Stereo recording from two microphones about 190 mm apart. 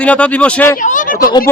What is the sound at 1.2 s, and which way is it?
Speech, 20° left (ahead or behind).